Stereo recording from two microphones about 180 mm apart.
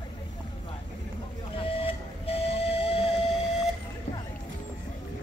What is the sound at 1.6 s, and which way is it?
Printer, 30° left (ahead or behind).